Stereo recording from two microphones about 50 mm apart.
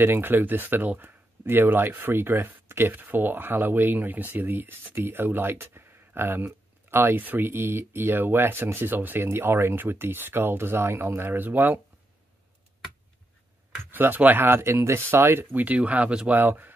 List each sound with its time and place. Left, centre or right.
0.0 s speech: right
2.9 s speech: right
13.9 s speech: right
14.6 s speech: right
15.5 s speech: right
16.3 s speech: right